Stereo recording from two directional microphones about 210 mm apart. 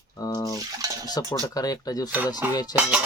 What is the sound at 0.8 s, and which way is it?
Stir, 15° right (ahead or behind).